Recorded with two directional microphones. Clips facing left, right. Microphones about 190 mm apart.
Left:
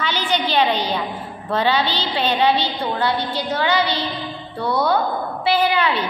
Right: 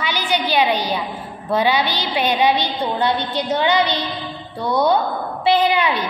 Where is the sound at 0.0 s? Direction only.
10° right (ahead or behind).